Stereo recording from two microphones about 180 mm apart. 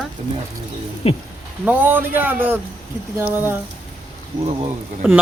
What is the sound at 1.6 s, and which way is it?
Speech, 10° right (ahead or behind).